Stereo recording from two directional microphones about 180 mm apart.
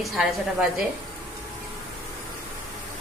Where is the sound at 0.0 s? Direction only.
Centre (ahead or behind).